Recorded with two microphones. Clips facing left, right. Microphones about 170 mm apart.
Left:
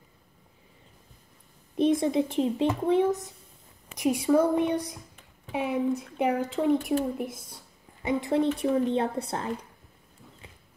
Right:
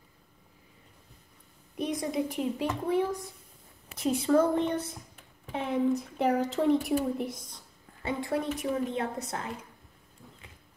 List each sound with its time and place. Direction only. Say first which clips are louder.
1.8 s a child's voice: left 7 dB; 25° left (ahead or behind); by 7.6 s 5° left (ahead or behind)
8.0 s a child's voice: left 6 dB; 20° left (ahead or behind)